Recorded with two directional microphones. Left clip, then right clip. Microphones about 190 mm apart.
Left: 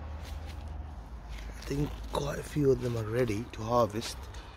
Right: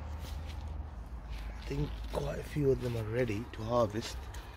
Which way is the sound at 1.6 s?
15° left (ahead or behind).